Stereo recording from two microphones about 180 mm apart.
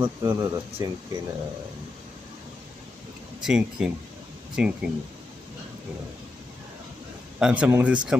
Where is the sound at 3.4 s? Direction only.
5° right (ahead or behind).